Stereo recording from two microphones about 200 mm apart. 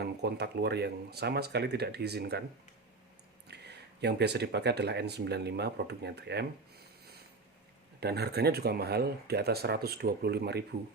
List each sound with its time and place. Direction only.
0.0 s speech: 55° right (ahead or behind)
3.5 s speech: 55° right (ahead or behind)